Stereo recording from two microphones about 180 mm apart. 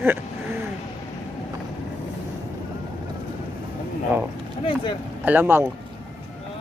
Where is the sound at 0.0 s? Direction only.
10° right (ahead or behind).